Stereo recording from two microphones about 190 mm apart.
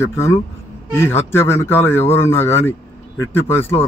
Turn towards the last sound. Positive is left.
turn(degrees=10)  # may be behind; listen again after turning